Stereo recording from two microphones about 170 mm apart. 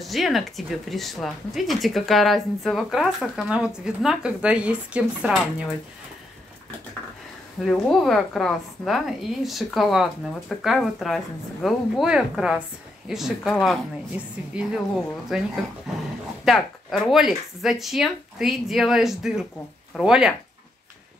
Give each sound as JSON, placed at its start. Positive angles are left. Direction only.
{"t": 0.0, "sound": "speech", "side_deg": 0}
{"t": 7.6, "sound": "speech", "side_deg": 0}
{"t": 16.4, "sound": "speech", "side_deg": 0}